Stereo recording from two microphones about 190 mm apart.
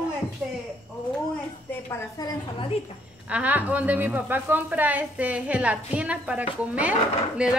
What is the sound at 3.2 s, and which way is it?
A woman's voice, 5° right (ahead or behind).